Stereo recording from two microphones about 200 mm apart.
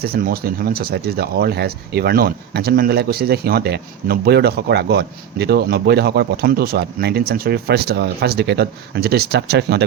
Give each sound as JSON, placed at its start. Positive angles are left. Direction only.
{"t": 0.0, "sound": "speech", "side_deg": -50}